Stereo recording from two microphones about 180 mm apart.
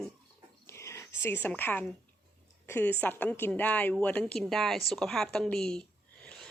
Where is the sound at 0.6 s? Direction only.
15° left (ahead or behind).